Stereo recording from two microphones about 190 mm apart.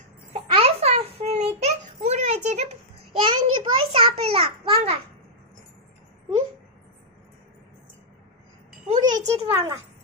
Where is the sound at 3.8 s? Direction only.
30° right (ahead or behind).